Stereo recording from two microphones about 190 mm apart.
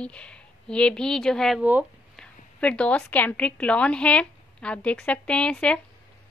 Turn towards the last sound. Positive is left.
turn(degrees=5)  # may be behind; listen again after turning